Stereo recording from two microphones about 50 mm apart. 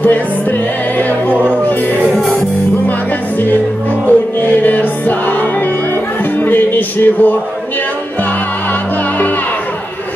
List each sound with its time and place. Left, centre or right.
0.0 s music: left
1.3 s music: right
2.0 s music: centre
4.0 s music: left
6.4 s a sound: left